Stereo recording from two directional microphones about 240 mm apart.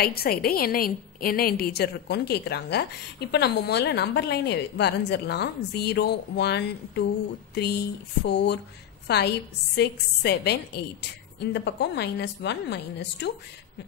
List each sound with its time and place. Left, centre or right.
0.0 s a woman's voice: left
8.2 s a woman's voice: left